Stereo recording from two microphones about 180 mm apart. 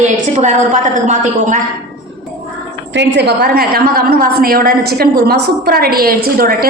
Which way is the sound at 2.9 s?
70° right (ahead or behind).